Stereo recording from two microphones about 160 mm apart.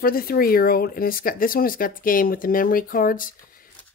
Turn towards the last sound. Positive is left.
turn(degrees=60)  # may be behind; listen again after turning